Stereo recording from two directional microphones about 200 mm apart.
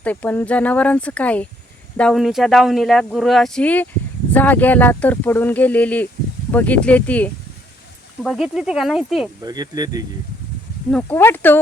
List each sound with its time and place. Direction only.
0.0 s speech: 10° left (ahead or behind)
9.4 s speech: 20° right (ahead or behind)
10.9 s speech: 10° left (ahead or behind)